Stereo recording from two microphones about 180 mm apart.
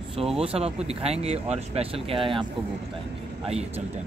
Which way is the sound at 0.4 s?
35° right (ahead or behind).